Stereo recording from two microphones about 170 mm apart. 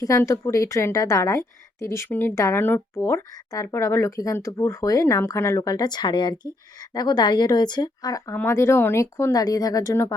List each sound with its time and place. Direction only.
0.0 s a woman's voice: 20° left (ahead or behind)